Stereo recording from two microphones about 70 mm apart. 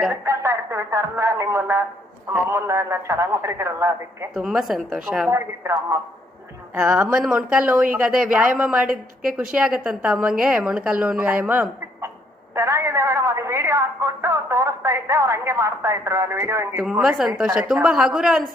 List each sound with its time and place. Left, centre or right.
0.1 s a man's voice: right
4.4 s a woman's voice: centre
5.3 s a man's voice: right
6.7 s a woman's voice: right
12.5 s a woman's voice: right
16.9 s a woman's voice: centre